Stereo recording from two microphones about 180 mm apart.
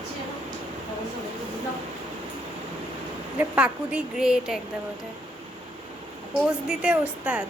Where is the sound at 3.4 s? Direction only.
5° right (ahead or behind).